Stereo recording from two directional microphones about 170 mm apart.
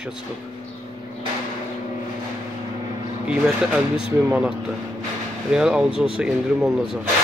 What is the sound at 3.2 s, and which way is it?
Speech, 5° right (ahead or behind).